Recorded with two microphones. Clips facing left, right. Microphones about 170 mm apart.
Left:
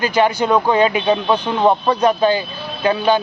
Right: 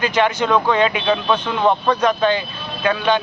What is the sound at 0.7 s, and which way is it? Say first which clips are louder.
Speech: left 2 dB; 35° left (ahead or behind).